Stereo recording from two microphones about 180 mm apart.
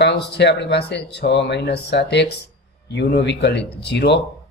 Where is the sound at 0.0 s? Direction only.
70° left (ahead or behind).